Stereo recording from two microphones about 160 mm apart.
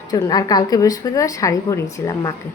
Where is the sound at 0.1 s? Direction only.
25° left (ahead or behind).